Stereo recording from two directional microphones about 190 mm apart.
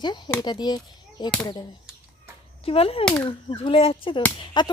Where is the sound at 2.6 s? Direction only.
30° left (ahead or behind).